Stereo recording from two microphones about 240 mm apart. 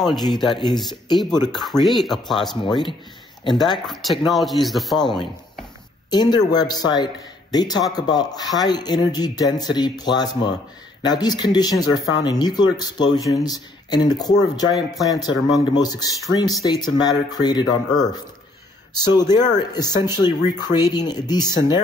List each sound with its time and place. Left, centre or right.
0.2 s speech: centre
1.5 s speech: centre
2.5 s speech: centre
3.7 s speech: centre
6.0 s speech: centre